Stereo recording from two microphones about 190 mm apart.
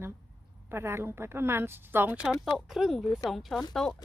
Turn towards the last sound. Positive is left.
turn(degrees=5)  # may be behind; listen again after turning